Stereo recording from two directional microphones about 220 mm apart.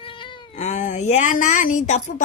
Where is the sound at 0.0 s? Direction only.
20° left (ahead or behind).